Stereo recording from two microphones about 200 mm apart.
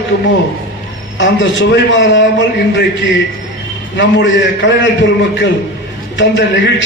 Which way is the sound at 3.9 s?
65° left (ahead or behind).